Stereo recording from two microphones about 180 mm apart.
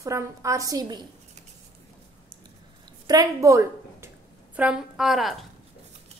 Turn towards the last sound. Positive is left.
turn(degrees=0)  # may be behind; listen again after turning